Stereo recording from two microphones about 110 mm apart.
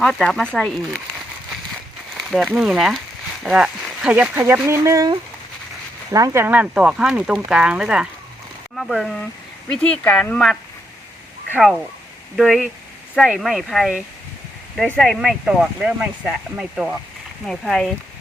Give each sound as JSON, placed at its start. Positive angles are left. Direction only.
{"t": 0.0, "sound": "speech", "side_deg": 5}
{"t": 2.3, "sound": "speech", "side_deg": 0}
{"t": 4.4, "sound": "speech", "side_deg": -20}
{"t": 6.1, "sound": "speech", "side_deg": -30}
{"t": 6.4, "sound": "speech", "side_deg": -15}
{"t": 9.6, "sound": "speech", "side_deg": 10}
{"t": 12.4, "sound": "speech", "side_deg": 0}
{"t": 14.9, "sound": "speech", "side_deg": 5}